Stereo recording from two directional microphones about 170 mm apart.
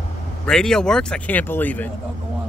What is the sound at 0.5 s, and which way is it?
Speech, 5° left (ahead or behind).